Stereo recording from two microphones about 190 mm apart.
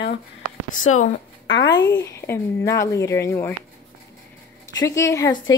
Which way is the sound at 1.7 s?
20° left (ahead or behind).